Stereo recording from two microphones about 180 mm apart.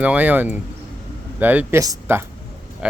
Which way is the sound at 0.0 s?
10° right (ahead or behind).